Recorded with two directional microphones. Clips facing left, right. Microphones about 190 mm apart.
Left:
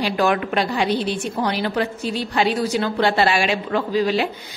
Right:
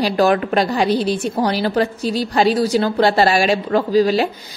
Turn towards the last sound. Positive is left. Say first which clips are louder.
# right 5 dB
turn(degrees=-40)  # may be behind; listen again after turning